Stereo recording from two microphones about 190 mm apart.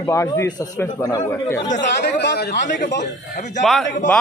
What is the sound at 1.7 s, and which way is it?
Speech, 65° left (ahead or behind).